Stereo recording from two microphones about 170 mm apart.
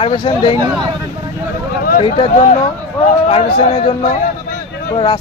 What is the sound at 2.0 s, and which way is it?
A man's voice, 40° left (ahead or behind).